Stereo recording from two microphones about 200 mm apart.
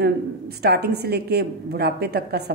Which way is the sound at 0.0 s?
55° right (ahead or behind).